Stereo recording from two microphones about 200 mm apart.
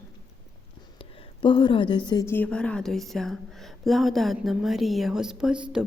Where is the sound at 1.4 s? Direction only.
25° left (ahead or behind).